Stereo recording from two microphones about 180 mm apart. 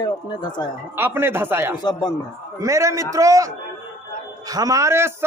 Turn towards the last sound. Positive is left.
turn(degrees=-15)  # may be behind; listen again after turning